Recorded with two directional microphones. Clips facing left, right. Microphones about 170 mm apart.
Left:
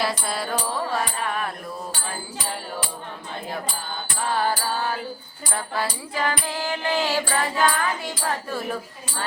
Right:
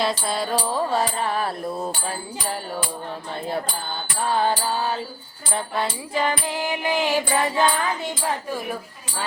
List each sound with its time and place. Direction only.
0.0 s music: 20° right (ahead or behind)
4.4 s music: 20° right (ahead or behind)
8.5 s speech: 10° right (ahead or behind)